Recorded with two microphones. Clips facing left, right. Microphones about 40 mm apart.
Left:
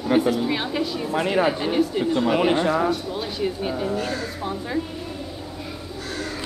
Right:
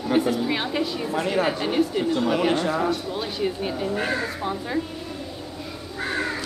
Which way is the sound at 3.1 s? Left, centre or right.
Centre.